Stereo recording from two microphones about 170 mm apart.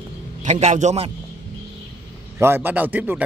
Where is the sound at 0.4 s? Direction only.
45° right (ahead or behind).